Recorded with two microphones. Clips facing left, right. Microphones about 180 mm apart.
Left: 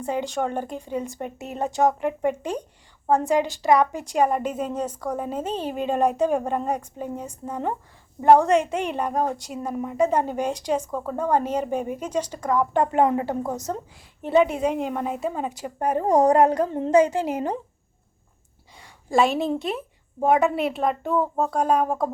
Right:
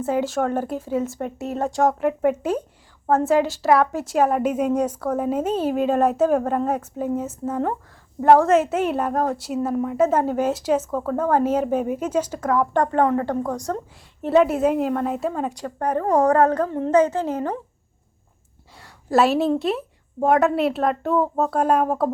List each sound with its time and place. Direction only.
0.0 s a woman's voice: 5° right (ahead or behind); by 17.6 s 15° left (ahead or behind)
18.8 s a woman's voice: 5° right (ahead or behind)